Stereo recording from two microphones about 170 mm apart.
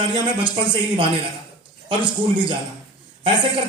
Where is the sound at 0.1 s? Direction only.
30° right (ahead or behind).